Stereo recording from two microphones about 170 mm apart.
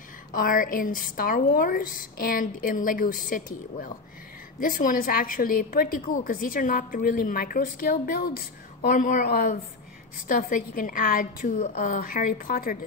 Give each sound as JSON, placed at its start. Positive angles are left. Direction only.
{"t": 0.4, "sound": "a woman's voice", "side_deg": 55}